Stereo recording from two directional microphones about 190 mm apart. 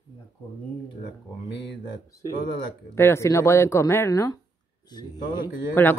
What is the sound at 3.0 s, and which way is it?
Speech, 15° left (ahead or behind).